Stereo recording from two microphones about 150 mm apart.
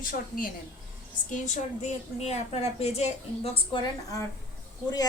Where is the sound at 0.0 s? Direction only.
65° left (ahead or behind).